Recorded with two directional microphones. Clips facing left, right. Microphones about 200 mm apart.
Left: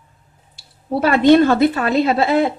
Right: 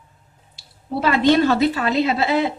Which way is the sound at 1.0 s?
50° left (ahead or behind).